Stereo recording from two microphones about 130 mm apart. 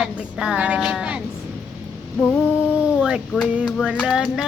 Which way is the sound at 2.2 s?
10° right (ahead or behind).